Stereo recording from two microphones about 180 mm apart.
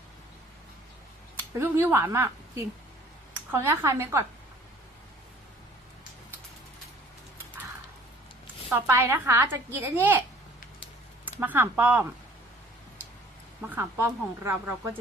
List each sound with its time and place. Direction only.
1.3 s a woman's voice: 10° right (ahead or behind)
8.7 s a woman's voice: 15° right (ahead or behind)
11.3 s a woman's voice: 10° right (ahead or behind)
13.7 s a woman's voice: 15° right (ahead or behind)